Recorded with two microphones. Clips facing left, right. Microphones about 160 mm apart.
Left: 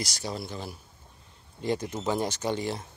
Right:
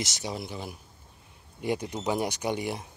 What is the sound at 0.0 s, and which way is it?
Speech, 20° right (ahead or behind).